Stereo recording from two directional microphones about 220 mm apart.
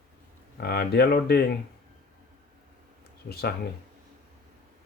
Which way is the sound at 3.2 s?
45° left (ahead or behind).